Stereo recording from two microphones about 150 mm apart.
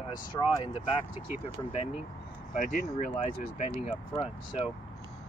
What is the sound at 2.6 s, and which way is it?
Speech, 60° left (ahead or behind).